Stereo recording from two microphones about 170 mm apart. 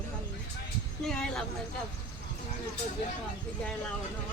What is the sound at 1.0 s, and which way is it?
Speech, 5° left (ahead or behind).